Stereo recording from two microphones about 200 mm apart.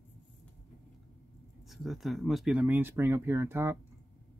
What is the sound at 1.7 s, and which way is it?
Speech, centre (ahead or behind).